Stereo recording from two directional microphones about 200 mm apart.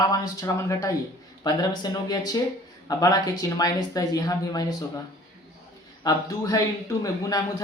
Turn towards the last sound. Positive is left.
turn(degrees=15)  # may be behind; listen again after turning